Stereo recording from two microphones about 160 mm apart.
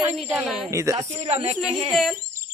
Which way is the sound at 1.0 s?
40° right (ahead or behind).